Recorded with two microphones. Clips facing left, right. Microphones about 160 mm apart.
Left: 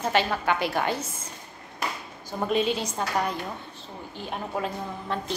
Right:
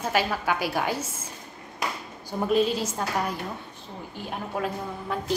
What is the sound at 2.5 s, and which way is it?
Speech, centre (ahead or behind).